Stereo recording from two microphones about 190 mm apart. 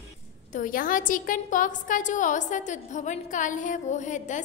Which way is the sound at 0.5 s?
45° left (ahead or behind).